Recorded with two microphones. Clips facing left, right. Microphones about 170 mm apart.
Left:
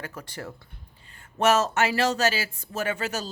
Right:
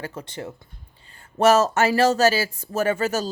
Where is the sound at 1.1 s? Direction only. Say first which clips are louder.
Right 5 dB; 35° right (ahead or behind).